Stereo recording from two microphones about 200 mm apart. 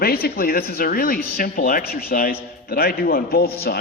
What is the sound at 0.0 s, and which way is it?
A man's voice, 50° left (ahead or behind).